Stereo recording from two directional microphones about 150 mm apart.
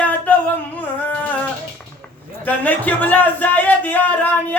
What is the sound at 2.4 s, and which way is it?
Speech, 10° left (ahead or behind).